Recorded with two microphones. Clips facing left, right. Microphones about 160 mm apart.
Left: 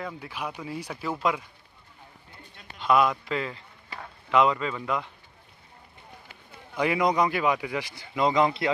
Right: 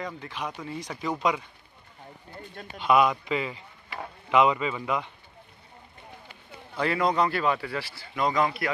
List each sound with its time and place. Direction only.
0.0 s a man's voice: 5° left (ahead or behind)
2.8 s a man's voice: centre (ahead or behind)
6.7 s a man's voice: 15° left (ahead or behind)